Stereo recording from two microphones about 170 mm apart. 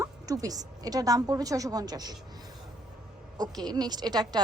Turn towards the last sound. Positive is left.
turn(degrees=-25)  # may be behind; listen again after turning